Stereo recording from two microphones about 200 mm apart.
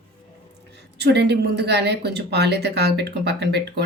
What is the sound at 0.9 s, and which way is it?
Speech, 55° right (ahead or behind).